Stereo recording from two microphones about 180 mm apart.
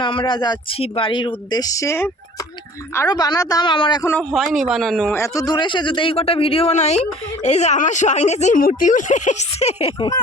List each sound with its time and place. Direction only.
0.0 s speech: 30° left (ahead or behind)
4.1 s a man's voice: 5° left (ahead or behind)
5.1 s a man's voice: 15° left (ahead or behind); by 10.1 s 35° left (ahead or behind)